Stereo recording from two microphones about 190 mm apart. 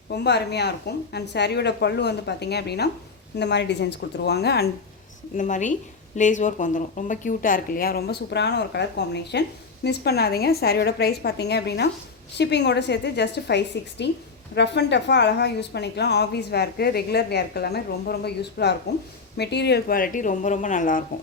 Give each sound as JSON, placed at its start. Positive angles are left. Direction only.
{"t": 0.1, "sound": "a woman's voice", "side_deg": 60}
{"t": 5.4, "sound": "a woman's voice", "side_deg": 40}